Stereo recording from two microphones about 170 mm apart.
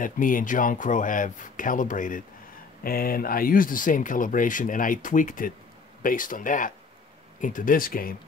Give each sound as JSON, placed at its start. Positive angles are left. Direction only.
{"t": 0.0, "sound": "speech", "side_deg": 50}